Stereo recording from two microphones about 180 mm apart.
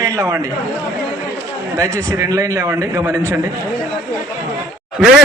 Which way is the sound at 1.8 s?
20° right (ahead or behind).